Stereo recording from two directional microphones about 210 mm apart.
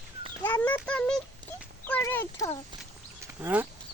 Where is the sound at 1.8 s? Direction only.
10° left (ahead or behind).